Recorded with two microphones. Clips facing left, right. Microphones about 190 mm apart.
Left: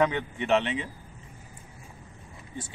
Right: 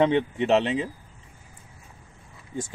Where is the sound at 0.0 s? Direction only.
30° right (ahead or behind).